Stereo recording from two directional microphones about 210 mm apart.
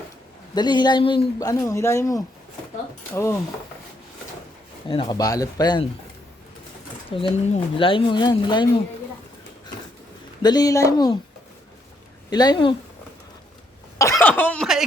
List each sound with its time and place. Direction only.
0.5 s a man's voice: 20° left (ahead or behind)
4.9 s a man's voice: 20° left (ahead or behind)
7.1 s a man's voice: 30° left (ahead or behind)
10.4 s a man's voice: 20° left (ahead or behind)
12.3 s a man's voice: 20° left (ahead or behind)
14.0 s speech: 10° left (ahead or behind)